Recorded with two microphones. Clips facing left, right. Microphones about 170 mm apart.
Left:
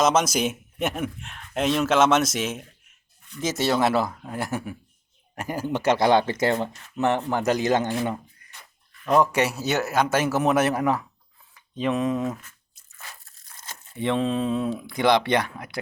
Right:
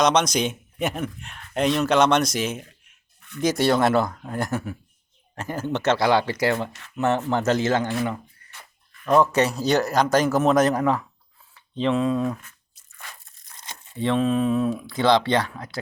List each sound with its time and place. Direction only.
0.0 s a man's voice: 5° left (ahead or behind)
6.0 s a man's voice: 20° left (ahead or behind)
13.9 s speech: 20° left (ahead or behind)